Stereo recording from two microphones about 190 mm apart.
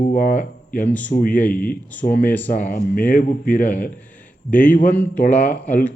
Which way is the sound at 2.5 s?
45° left (ahead or behind).